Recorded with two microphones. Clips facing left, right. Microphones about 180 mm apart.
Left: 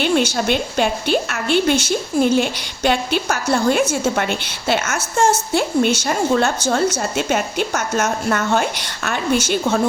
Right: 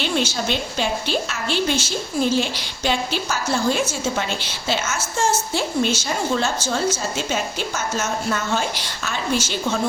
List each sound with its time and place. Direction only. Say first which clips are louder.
0.0 s a woman's voice: left 5 dB; 55° left (ahead or behind)